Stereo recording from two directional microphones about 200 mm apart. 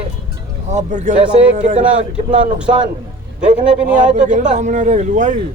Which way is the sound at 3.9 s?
40° right (ahead or behind).